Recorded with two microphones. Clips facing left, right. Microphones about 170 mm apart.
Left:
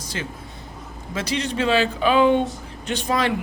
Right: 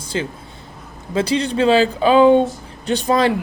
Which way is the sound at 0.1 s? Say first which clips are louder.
Right 8 dB; 30° right (ahead or behind).